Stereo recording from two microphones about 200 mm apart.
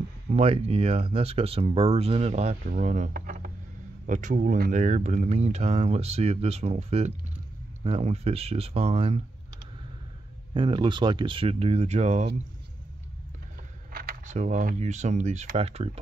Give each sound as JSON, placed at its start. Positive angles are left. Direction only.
{"t": 0.3, "sound": "speech", "side_deg": -30}
{"t": 10.5, "sound": "speech", "side_deg": -25}
{"t": 13.9, "sound": "speech", "side_deg": -40}